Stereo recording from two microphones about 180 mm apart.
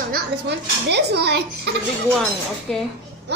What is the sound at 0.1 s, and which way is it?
Speech, 70° right (ahead or behind).